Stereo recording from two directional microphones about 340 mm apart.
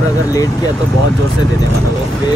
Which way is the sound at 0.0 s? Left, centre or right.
Centre.